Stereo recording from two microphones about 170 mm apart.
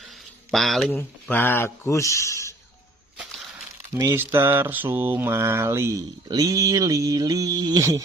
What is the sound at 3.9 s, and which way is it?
Mantra, 15° right (ahead or behind).